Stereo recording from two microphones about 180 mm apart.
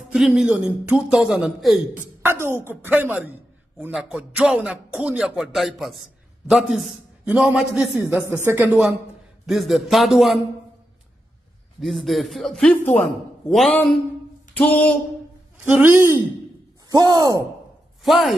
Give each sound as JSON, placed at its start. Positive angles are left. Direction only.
{"t": 0.1, "sound": "a man's voice", "side_deg": 0}
{"t": 2.0, "sound": "a woman's voice", "side_deg": -15}
{"t": 11.8, "sound": "a man's voice", "side_deg": 0}
{"t": 15.6, "sound": "a woman's voice", "side_deg": -10}
{"t": 16.9, "sound": "a sound", "side_deg": -20}